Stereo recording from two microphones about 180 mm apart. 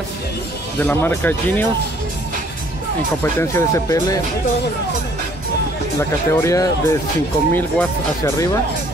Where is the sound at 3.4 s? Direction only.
15° left (ahead or behind).